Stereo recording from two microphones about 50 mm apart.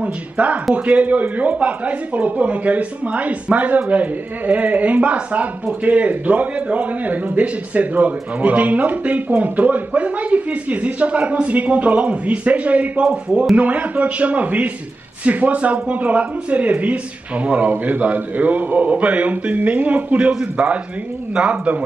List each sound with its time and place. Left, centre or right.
0.0 s a man's voice: right
13.0 s a man's voice: centre
13.6 s speech: right